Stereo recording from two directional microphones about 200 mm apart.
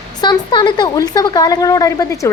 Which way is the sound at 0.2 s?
20° left (ahead or behind).